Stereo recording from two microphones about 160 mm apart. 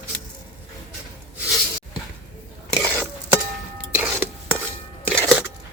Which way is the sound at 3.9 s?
15° right (ahead or behind).